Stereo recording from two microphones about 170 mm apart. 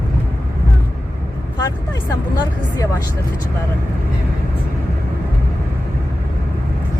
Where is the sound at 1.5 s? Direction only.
25° left (ahead or behind).